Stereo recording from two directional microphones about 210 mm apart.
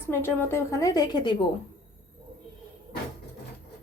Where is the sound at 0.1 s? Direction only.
10° left (ahead or behind).